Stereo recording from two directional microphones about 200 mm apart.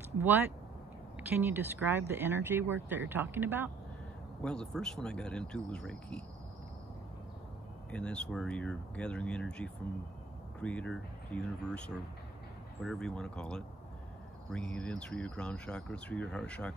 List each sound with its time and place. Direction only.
1.4 s speech: 10° right (ahead or behind)
4.4 s speech: 5° left (ahead or behind)
7.9 s speech: 5° left (ahead or behind)